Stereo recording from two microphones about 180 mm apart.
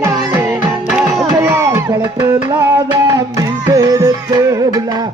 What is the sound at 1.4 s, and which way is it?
Music, 15° right (ahead or behind).